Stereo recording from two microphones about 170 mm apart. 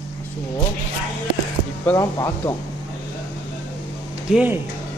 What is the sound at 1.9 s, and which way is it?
Speech, 20° left (ahead or behind).